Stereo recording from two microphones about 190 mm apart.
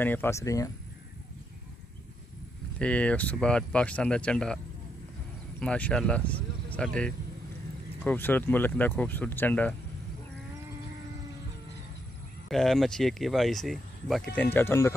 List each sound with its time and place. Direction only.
0.0 s speech: 10° left (ahead or behind)
2.8 s speech: 5° left (ahead or behind)
5.6 s speech: 5° left (ahead or behind)
12.4 s speech: centre (ahead or behind)